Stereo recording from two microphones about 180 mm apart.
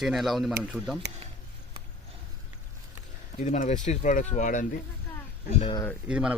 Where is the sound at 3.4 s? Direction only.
45° left (ahead or behind).